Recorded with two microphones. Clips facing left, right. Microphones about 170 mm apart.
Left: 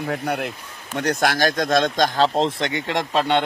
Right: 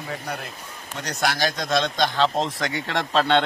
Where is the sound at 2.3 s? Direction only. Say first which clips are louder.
Left 4 dB; 25° left (ahead or behind).